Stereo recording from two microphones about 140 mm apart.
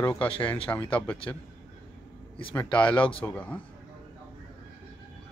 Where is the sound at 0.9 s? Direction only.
10° left (ahead or behind).